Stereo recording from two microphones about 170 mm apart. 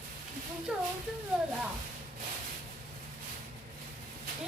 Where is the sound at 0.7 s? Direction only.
5° right (ahead or behind).